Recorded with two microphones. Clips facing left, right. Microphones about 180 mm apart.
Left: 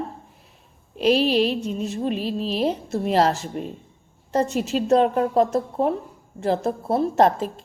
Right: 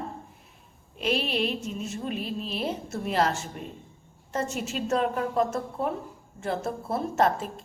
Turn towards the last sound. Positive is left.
turn(degrees=35)  # may be behind; listen again after turning